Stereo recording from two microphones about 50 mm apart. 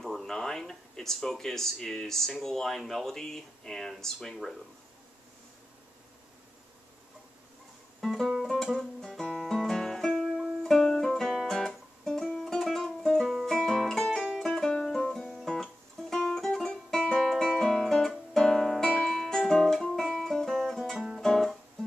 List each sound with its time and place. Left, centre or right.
0.0 s a sound: centre
2.4 s speech: centre
8.0 s music: centre